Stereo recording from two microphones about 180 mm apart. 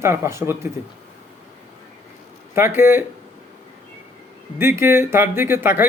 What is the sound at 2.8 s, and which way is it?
Speech, 10° right (ahead or behind).